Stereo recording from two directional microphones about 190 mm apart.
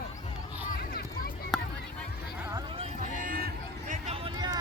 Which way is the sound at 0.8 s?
55° left (ahead or behind).